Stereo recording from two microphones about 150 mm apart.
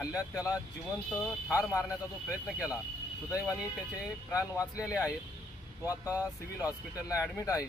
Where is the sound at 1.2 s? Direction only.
15° left (ahead or behind).